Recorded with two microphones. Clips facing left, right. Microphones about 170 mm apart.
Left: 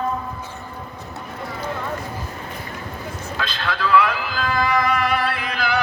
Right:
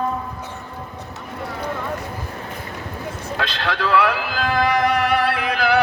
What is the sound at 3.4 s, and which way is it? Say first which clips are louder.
Music: right 1 dB; 75° right (ahead or behind).